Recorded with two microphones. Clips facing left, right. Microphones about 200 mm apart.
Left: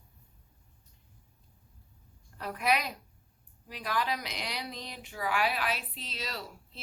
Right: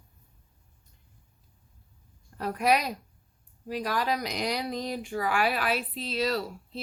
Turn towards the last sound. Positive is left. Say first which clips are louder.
# right 11 dB
turn(degrees=-40)  # may be behind; listen again after turning